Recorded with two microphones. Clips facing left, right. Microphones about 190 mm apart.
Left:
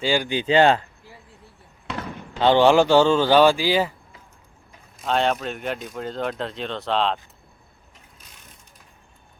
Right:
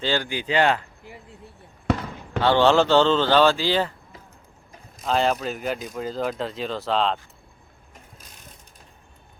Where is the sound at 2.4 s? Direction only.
15° left (ahead or behind).